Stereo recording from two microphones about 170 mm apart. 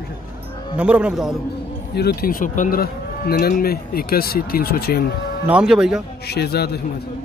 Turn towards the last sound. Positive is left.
turn(degrees=70)  # may be behind; listen again after turning